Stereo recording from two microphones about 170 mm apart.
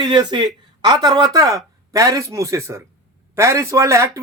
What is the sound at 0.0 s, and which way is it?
Speech, 25° right (ahead or behind).